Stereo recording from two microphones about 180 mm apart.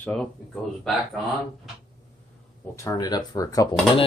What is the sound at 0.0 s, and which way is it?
Speech, 5° left (ahead or behind).